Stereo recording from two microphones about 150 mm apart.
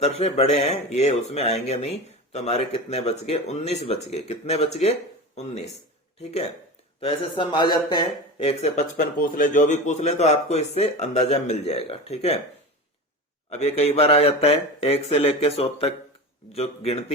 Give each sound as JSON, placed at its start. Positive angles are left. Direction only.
{"t": 0.0, "sound": "speech", "side_deg": 45}
{"t": 7.0, "sound": "speech", "side_deg": 30}
{"t": 9.1, "sound": "speech", "side_deg": 65}
{"t": 13.5, "sound": "speech", "side_deg": 45}